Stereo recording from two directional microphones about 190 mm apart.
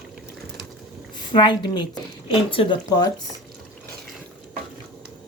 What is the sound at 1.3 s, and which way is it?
Speech, 25° left (ahead or behind).